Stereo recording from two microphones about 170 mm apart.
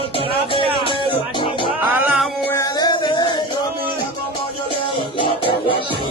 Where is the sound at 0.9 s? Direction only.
30° left (ahead or behind).